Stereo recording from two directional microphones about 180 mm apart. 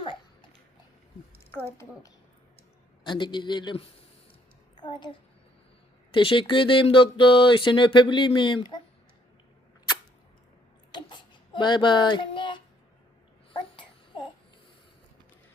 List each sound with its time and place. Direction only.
1.6 s a woman's voice: 15° left (ahead or behind)
3.0 s speech: 25° left (ahead or behind)
6.1 s speech: 30° left (ahead or behind)
10.9 s a sound: 25° left (ahead or behind)
13.5 s babbling: 25° left (ahead or behind)